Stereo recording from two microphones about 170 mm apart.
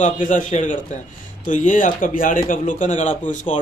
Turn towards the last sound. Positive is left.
turn(degrees=45)  # may be behind; listen again after turning